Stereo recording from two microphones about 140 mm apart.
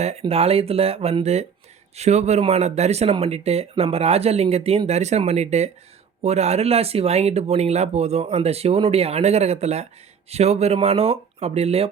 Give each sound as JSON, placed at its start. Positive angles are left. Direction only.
{"t": 0.0, "sound": "speech", "side_deg": -50}